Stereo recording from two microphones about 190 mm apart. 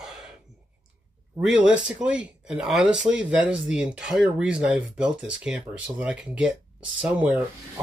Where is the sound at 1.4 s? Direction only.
5° right (ahead or behind).